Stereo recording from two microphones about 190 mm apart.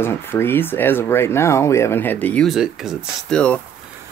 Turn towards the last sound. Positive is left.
turn(degrees=5)  # may be behind; listen again after turning